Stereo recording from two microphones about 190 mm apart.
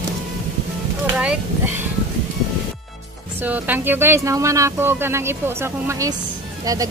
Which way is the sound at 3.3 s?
10° right (ahead or behind).